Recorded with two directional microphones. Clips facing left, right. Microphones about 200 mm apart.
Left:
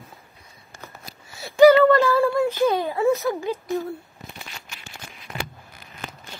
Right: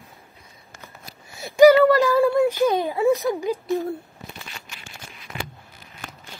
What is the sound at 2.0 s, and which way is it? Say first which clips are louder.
Speech: right 2 dB; 15° right (ahead or behind).